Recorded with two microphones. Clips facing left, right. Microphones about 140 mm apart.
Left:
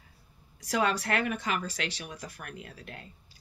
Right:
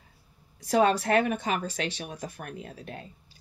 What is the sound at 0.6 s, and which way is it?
Speech, 30° right (ahead or behind).